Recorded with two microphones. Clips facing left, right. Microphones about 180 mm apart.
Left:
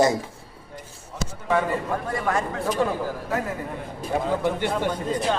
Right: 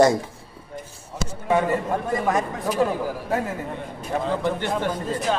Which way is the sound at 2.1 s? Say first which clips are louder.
Right 2 dB; 20° right (ahead or behind).